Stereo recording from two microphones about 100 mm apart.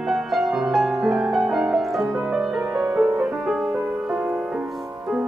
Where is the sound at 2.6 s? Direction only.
20° right (ahead or behind).